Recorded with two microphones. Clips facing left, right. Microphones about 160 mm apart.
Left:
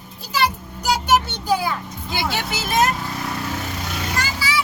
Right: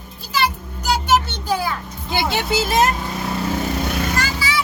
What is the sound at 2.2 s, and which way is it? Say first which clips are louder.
Speech: right 5 dB; 25° right (ahead or behind).